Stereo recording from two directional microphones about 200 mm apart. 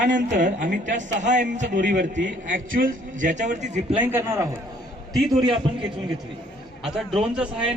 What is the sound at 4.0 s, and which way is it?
Speech, 10° right (ahead or behind).